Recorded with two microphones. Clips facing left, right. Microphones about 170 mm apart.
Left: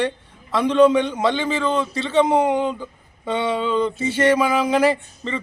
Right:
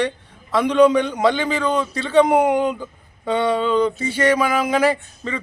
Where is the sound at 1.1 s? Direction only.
10° right (ahead or behind).